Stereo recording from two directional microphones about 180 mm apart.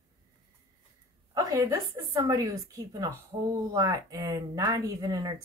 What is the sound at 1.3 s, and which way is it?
Speech, 20° right (ahead or behind).